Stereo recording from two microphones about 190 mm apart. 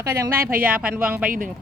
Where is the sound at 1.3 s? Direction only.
45° right (ahead or behind).